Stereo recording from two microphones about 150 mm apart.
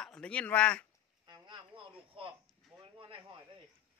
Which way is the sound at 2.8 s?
35° right (ahead or behind).